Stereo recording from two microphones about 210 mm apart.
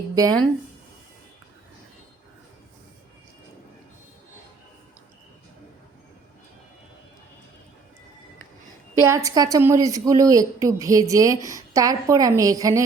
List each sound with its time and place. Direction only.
0.1 s speech: 15° right (ahead or behind)
9.0 s a woman's voice: 15° right (ahead or behind)